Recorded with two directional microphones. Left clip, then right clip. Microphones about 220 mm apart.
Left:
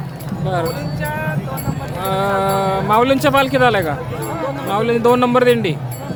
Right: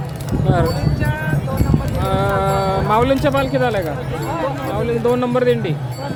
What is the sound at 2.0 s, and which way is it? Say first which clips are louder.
A man's voice: left 2 dB; 5° left (ahead or behind).